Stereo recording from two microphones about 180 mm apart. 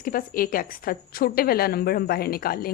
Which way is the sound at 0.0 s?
50° left (ahead or behind).